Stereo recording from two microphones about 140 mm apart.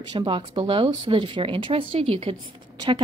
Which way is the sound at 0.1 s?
35° right (ahead or behind).